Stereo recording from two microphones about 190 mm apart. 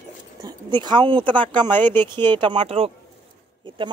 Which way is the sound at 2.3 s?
25° right (ahead or behind).